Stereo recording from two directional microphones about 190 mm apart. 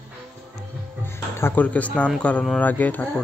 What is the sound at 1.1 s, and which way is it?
Speech, 10° left (ahead or behind).